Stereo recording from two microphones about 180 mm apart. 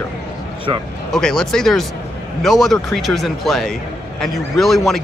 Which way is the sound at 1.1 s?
5° left (ahead or behind).